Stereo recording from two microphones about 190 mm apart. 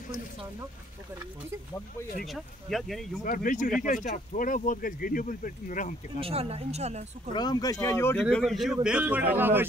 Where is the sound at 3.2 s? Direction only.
45° left (ahead or behind).